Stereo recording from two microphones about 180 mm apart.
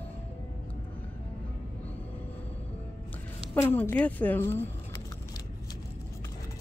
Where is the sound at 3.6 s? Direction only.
10° left (ahead or behind).